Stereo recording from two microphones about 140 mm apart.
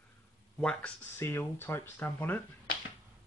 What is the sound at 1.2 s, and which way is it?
Speech, 20° left (ahead or behind).